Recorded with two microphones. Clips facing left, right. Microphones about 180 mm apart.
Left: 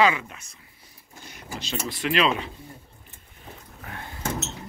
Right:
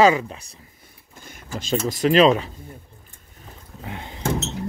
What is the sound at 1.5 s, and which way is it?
Speech, 45° right (ahead or behind).